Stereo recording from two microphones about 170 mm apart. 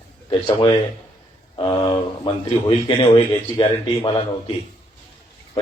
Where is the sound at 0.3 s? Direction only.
30° left (ahead or behind).